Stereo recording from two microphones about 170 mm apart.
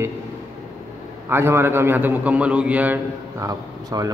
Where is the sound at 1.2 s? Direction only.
15° right (ahead or behind).